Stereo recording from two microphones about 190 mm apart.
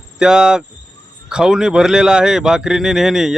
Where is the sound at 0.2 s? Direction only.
5° right (ahead or behind).